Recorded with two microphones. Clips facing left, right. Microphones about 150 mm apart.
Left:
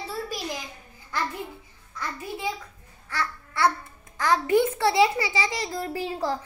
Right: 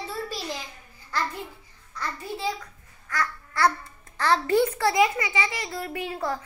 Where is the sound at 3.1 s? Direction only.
30° left (ahead or behind).